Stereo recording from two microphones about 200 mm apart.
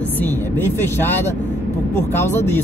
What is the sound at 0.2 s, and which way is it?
Speech, 10° left (ahead or behind).